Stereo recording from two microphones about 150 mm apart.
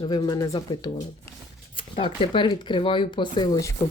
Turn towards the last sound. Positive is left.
turn(degrees=30)  # may be behind; listen again after turning